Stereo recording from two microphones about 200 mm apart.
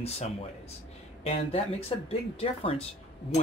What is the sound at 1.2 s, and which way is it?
Speech, 30° left (ahead or behind).